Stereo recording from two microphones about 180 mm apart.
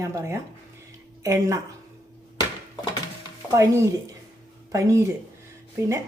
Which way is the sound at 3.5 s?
15° right (ahead or behind).